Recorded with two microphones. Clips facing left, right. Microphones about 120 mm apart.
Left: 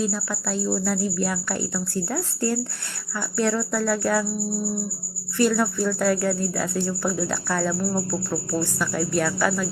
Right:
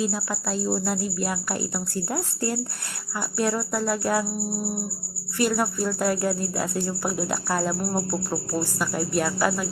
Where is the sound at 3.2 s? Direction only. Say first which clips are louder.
Left 2 dB; 15° right (ahead or behind).